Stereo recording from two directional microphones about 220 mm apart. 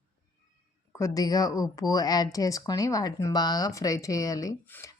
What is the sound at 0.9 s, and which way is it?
Speech, 15° left (ahead or behind).